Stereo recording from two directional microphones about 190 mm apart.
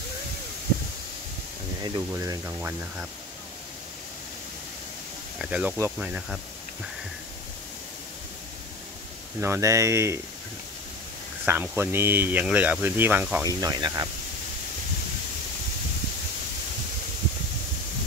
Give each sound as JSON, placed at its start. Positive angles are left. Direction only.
{"t": 1.8, "sound": "speech", "side_deg": -20}
{"t": 5.4, "sound": "speech", "side_deg": -10}
{"t": 9.4, "sound": "speech", "side_deg": -15}
{"t": 11.4, "sound": "speech", "side_deg": -10}